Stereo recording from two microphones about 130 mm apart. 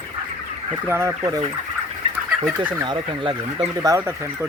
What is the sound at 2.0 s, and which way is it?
Bird, 50° right (ahead or behind).